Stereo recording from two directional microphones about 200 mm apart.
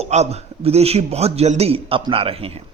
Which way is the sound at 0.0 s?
35° right (ahead or behind).